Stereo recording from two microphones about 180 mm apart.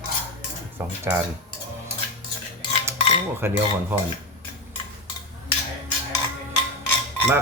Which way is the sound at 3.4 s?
15° right (ahead or behind).